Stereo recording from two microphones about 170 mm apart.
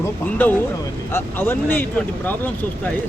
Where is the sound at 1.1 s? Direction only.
10° left (ahead or behind).